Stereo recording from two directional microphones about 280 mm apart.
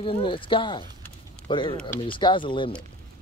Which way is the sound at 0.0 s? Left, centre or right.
Centre.